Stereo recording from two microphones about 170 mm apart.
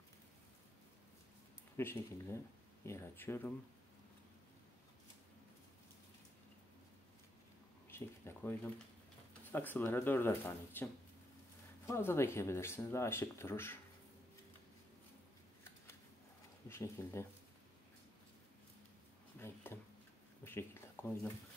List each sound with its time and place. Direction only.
1.8 s speech: 15° left (ahead or behind)
7.9 s speech: 15° left (ahead or behind)
16.6 s speech: 15° left (ahead or behind)
19.4 s a sound: 15° left (ahead or behind)